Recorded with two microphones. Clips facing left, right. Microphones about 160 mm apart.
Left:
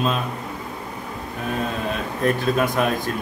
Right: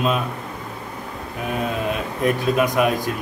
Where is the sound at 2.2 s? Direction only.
15° right (ahead or behind).